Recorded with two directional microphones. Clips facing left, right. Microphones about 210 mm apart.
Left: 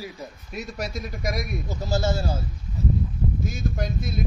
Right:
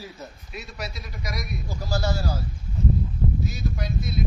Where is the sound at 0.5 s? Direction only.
45° left (ahead or behind).